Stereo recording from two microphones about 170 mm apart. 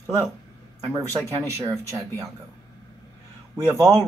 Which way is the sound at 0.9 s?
20° right (ahead or behind).